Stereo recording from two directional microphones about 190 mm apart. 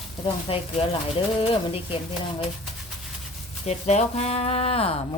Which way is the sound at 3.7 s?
35° left (ahead or behind).